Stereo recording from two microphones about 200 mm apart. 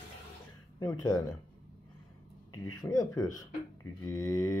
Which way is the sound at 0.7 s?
20° left (ahead or behind).